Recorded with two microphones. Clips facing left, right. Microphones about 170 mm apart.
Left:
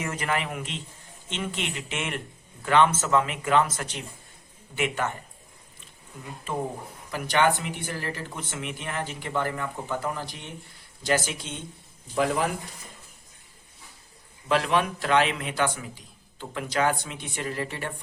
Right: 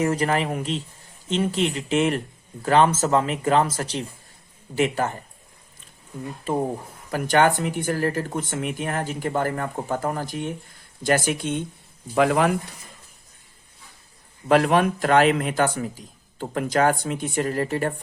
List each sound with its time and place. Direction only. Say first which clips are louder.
0.0 s speech: right 7 dB; 35° right (ahead or behind)
7.1 s speech: right 4 dB; 45° right (ahead or behind)
12.1 s speech: right 6 dB; 70° right (ahead or behind)
14.4 s speech: right 6 dB; 50° right (ahead or behind)